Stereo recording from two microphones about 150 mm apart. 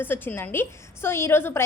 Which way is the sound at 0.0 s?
15° left (ahead or behind).